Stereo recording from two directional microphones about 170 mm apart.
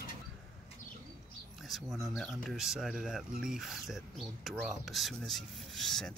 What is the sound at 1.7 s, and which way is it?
Speech, centre (ahead or behind).